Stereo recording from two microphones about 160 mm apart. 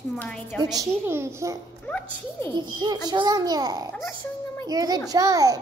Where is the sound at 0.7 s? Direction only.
15° right (ahead or behind).